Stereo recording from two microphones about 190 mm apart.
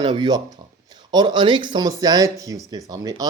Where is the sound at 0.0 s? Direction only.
25° right (ahead or behind).